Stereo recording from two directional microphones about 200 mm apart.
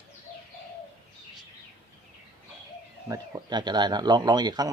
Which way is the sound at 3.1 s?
20° right (ahead or behind).